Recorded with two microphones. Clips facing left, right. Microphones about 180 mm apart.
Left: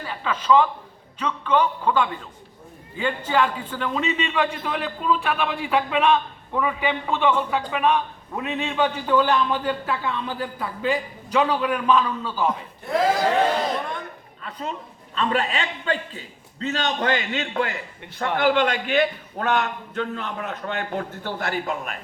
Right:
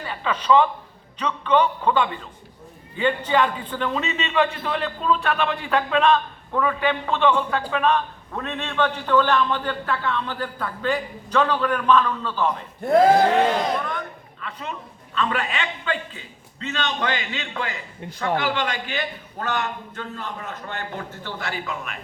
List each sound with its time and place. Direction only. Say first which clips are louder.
0.0 s a sound: right 1 dB; centre (ahead or behind)
0.4 s a man's voice: even; 5° left (ahead or behind)
14.4 s a man's voice: left 2 dB; 35° left (ahead or behind)